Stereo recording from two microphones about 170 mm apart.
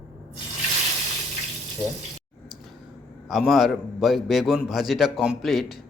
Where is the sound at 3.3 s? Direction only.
Centre (ahead or behind).